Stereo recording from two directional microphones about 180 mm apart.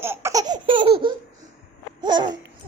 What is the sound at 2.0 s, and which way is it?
Babbling, 25° right (ahead or behind).